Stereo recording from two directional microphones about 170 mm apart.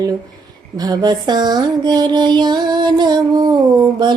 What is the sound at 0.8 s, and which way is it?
Music, 25° right (ahead or behind).